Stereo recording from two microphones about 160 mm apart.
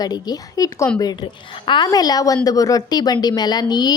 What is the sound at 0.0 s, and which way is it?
A woman's voice, 25° left (ahead or behind).